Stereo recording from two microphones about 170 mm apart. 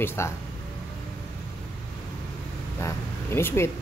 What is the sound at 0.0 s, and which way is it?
Speech, 15° left (ahead or behind).